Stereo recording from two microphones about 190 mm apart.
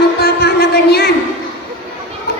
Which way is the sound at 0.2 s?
55° left (ahead or behind).